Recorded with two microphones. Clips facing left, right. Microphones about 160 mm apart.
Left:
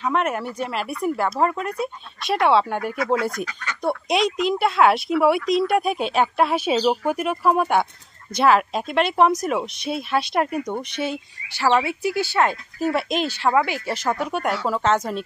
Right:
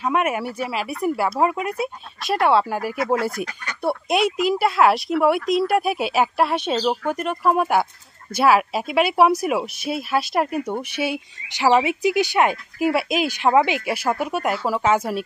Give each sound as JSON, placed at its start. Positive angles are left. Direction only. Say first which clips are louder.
{"t": 0.0, "sound": "speech", "louder": "right 1 dB", "side_deg": -10}